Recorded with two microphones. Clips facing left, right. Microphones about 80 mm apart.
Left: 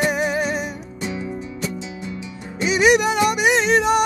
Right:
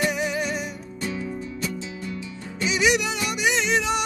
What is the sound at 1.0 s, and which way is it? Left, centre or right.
Music, left.